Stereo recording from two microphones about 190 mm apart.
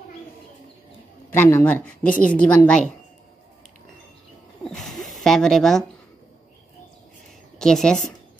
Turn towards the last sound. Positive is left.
turn(degrees=5)  # may be behind; listen again after turning